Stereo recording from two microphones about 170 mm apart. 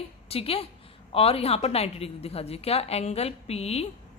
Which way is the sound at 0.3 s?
35° left (ahead or behind).